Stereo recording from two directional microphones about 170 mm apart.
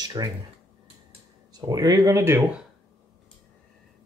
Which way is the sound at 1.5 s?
20° right (ahead or behind).